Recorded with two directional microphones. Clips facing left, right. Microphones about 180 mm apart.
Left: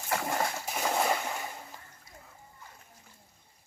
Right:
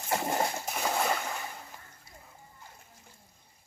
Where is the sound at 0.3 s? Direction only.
20° right (ahead or behind).